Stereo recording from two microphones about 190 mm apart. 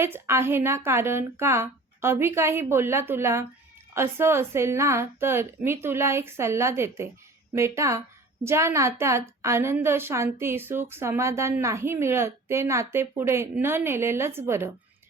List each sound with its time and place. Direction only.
0.0 s a woman's voice: 15° right (ahead or behind)